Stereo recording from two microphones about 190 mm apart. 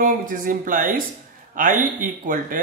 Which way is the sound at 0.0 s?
45° right (ahead or behind).